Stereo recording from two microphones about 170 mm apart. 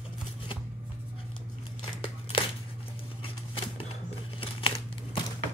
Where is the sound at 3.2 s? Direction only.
30° left (ahead or behind).